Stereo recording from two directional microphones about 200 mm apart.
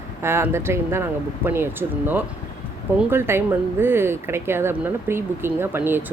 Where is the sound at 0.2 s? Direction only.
10° right (ahead or behind).